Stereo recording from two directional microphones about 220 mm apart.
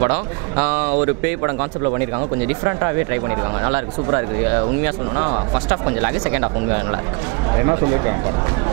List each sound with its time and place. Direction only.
0.0 s speech: 10° right (ahead or behind)